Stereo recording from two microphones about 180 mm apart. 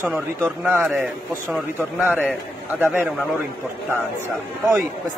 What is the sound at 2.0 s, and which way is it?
Speech, 10° right (ahead or behind).